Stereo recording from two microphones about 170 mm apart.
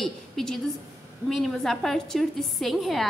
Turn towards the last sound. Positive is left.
turn(degrees=0)  # may be behind; listen again after turning